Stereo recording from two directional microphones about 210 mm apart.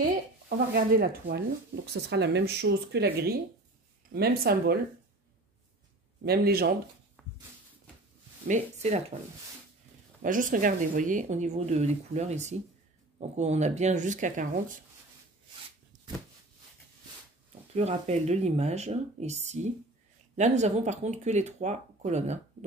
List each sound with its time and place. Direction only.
0.7 s speech: 50° right (ahead or behind)
6.2 s speech: 45° right (ahead or behind)
7.2 s a sound: centre (ahead or behind)
8.5 s speech: 35° right (ahead or behind)
10.2 s speech: 40° right (ahead or behind)
17.7 s speech: 30° right (ahead or behind)